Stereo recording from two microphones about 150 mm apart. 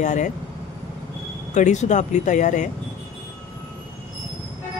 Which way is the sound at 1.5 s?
50° left (ahead or behind).